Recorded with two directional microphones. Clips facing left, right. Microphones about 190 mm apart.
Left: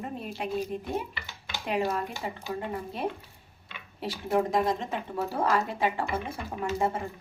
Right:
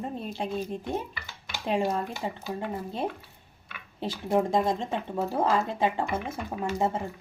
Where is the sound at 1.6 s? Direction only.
30° right (ahead or behind).